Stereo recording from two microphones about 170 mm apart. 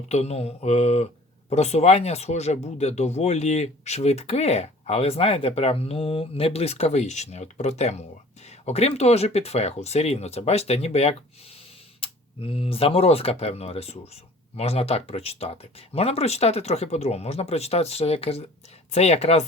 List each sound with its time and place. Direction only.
0.1 s speech: 40° left (ahead or behind)